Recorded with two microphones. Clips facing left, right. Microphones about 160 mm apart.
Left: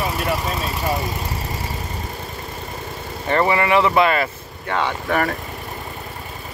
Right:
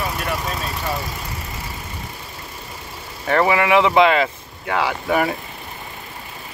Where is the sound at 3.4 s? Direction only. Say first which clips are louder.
Right 1 dB; 10° right (ahead or behind).